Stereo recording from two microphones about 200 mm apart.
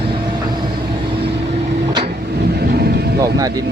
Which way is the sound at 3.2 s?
15° right (ahead or behind).